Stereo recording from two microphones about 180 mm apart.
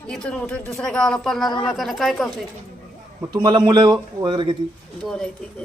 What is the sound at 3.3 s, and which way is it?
A man's voice, 25° right (ahead or behind).